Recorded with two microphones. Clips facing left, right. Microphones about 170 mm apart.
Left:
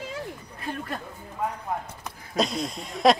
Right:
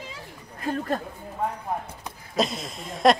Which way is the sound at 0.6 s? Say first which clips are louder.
Right 7 dB; 40° right (ahead or behind).